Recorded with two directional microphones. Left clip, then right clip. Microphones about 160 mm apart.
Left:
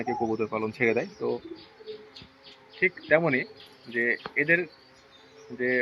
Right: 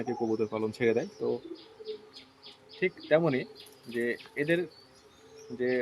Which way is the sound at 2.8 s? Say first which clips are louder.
Left 3 dB; 25° right (ahead or behind).